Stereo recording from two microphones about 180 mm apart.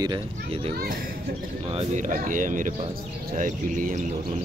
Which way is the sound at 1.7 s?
40° right (ahead or behind).